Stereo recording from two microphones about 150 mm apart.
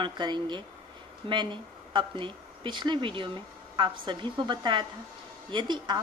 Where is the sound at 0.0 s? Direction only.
30° right (ahead or behind).